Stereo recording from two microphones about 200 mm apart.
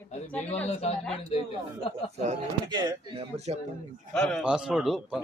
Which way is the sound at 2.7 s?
20° right (ahead or behind).